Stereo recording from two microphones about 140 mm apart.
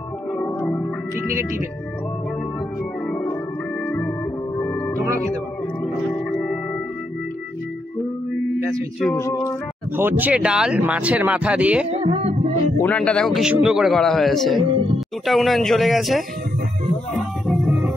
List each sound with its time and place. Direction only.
0.4 s music: 15° left (ahead or behind)
4.6 s music: 15° left (ahead or behind)
6.3 s music: 5° left (ahead or behind)
9.1 s speech: 25° left (ahead or behind)
9.9 s speech: 15° right (ahead or behind)
11.9 s music: 50° right (ahead or behind)
12.7 s a man's voice: 10° left (ahead or behind)
17.5 s music: centre (ahead or behind)